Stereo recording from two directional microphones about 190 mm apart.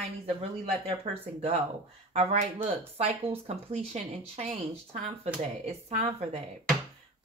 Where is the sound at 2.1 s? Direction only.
30° right (ahead or behind).